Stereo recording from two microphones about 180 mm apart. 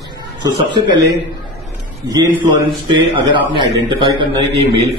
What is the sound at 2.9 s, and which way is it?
A man's voice, 25° right (ahead or behind).